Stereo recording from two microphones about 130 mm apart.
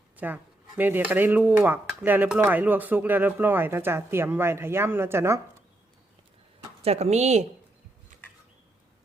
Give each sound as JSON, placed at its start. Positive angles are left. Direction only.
{"t": 0.2, "sound": "speech", "side_deg": -15}
{"t": 6.8, "sound": "speech", "side_deg": -55}